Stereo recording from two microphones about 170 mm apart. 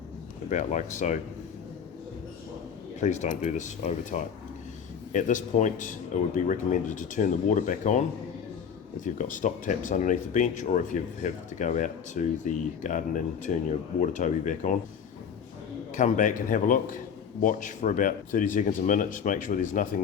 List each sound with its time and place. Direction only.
0.5 s speech: 45° left (ahead or behind)
3.0 s speech: 45° left (ahead or behind)
16.0 s speech: 50° left (ahead or behind)